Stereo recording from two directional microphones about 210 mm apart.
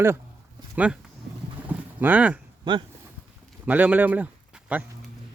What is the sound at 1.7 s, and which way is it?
Boat, 10° right (ahead or behind).